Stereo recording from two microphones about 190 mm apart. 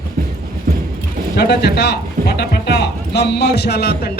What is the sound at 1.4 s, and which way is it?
Speech, 60° left (ahead or behind).